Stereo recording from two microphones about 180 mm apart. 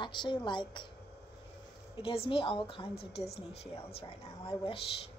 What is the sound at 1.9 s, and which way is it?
Speech, 30° left (ahead or behind).